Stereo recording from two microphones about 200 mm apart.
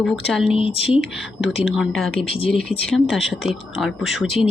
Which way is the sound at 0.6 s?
25° left (ahead or behind).